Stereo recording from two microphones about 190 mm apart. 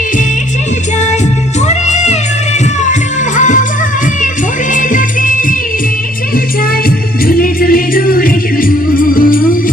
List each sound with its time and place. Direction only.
1.6 s music: 35° left (ahead or behind)
3.3 s music: 40° left (ahead or behind)
4.7 s music: 45° left (ahead or behind)
7.3 s music: 50° left (ahead or behind)